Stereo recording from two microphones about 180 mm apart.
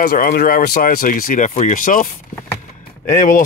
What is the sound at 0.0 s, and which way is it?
Speech, 50° left (ahead or behind).